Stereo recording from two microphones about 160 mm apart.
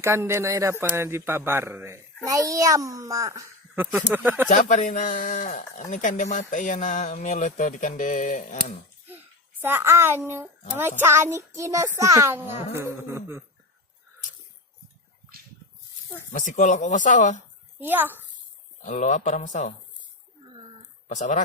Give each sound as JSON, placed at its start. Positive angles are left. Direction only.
{"t": 0.0, "sound": "a child's voice", "side_deg": -15}
{"t": 4.4, "sound": "mantra", "side_deg": 50}
{"t": 9.6, "sound": "a child's voice", "side_deg": -15}
{"t": 16.4, "sound": "mantra", "side_deg": 50}
{"t": 17.7, "sound": "a child's voice", "side_deg": -10}
{"t": 18.9, "sound": "mantra", "side_deg": 50}
{"t": 21.1, "sound": "mantra", "side_deg": 50}